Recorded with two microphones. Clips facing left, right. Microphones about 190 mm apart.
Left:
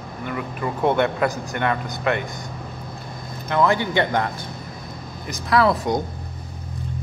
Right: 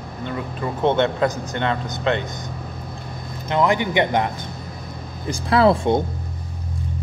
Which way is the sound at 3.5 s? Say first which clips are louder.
Right 1 dB; 15° right (ahead or behind).